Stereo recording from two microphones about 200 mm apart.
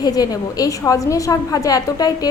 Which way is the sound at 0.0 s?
20° left (ahead or behind).